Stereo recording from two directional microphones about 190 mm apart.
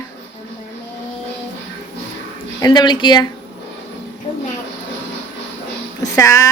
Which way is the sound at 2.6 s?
25° left (ahead or behind).